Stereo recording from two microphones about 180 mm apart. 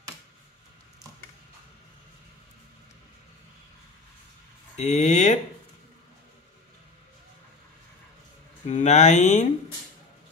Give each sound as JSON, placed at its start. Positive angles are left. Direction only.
{"t": 4.7, "sound": "speech", "side_deg": 40}
{"t": 8.6, "sound": "speech", "side_deg": 40}